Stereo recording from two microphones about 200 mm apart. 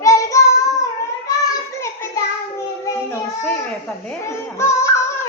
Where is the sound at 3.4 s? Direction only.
15° left (ahead or behind).